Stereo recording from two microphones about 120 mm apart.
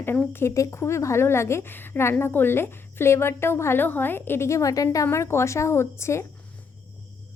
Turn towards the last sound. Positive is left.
turn(degrees=20)  # may be behind; listen again after turning